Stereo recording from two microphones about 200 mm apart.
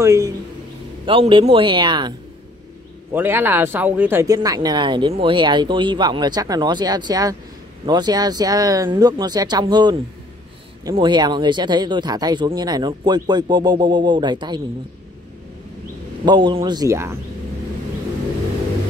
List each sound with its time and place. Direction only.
0.0 s speech: 15° right (ahead or behind)
1.0 s speech: 25° right (ahead or behind)
3.1 s speech: 10° right (ahead or behind)
16.3 s speech: 25° right (ahead or behind)